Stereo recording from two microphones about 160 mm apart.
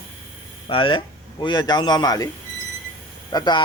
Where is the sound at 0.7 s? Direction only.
30° left (ahead or behind).